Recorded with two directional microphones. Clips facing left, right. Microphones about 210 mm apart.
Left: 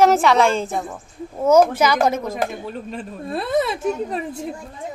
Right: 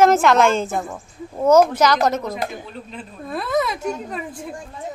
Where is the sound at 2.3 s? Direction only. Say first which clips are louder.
Left 3 dB; 50° left (ahead or behind).